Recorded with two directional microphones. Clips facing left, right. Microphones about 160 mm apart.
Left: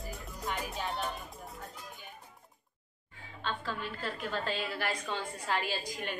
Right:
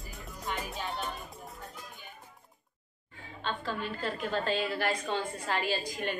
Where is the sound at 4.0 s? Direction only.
5° left (ahead or behind).